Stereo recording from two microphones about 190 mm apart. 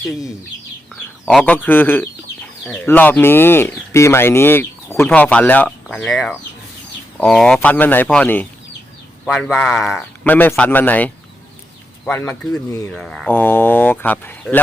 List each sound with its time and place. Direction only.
1.2 s speech: centre (ahead or behind)